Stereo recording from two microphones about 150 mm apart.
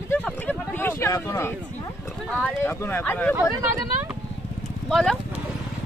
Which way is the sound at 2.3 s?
15° left (ahead or behind).